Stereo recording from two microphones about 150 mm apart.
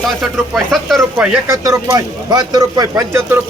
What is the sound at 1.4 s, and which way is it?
Speech, 20° right (ahead or behind).